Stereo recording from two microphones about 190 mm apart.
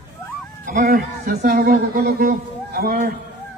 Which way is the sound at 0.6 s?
50° right (ahead or behind).